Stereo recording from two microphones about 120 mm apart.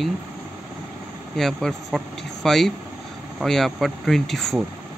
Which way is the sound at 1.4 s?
5° left (ahead or behind).